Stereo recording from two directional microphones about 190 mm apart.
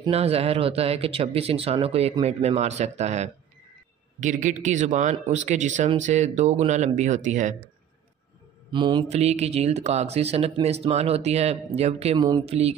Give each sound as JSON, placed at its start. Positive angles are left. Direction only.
{"t": 0.0, "sound": "speech", "side_deg": -30}
{"t": 8.7, "sound": "speech", "side_deg": -25}